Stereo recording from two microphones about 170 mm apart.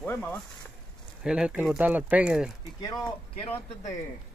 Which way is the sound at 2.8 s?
20° left (ahead or behind).